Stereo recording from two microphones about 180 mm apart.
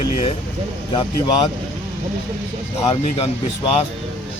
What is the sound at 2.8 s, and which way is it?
Speech, 25° left (ahead or behind).